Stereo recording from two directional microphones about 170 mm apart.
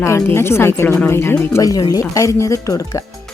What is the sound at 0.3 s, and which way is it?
Speech, 15° left (ahead or behind).